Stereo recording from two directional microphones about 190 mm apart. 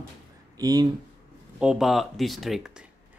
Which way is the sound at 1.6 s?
5° right (ahead or behind).